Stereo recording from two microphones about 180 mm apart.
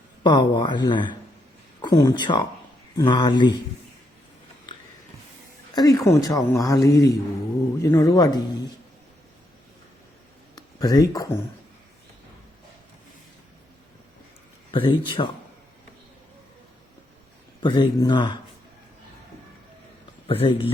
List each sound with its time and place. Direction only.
0.2 s speech: 25° left (ahead or behind)
5.7 s speech: 20° left (ahead or behind)
10.5 s speech: 20° left (ahead or behind)
14.7 s speech: 25° left (ahead or behind)
17.6 s speech: 25° left (ahead or behind)
20.2 s speech: 30° left (ahead or behind)